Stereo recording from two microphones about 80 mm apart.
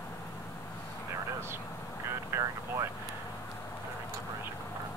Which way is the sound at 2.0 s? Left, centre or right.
Right.